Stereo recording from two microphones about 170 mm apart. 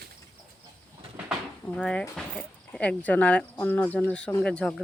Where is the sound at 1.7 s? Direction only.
5° left (ahead or behind).